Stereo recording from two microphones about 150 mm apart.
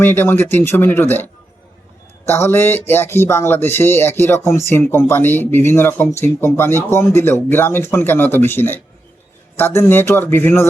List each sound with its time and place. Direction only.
0.0 s speech: 15° left (ahead or behind)